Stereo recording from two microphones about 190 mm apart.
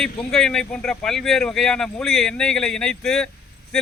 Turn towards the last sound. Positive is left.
turn(degrees=5)  # may be behind; listen again after turning